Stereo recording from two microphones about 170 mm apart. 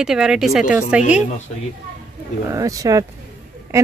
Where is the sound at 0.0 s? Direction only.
5° right (ahead or behind).